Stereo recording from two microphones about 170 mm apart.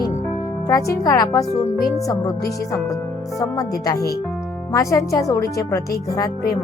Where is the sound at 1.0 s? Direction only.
20° left (ahead or behind).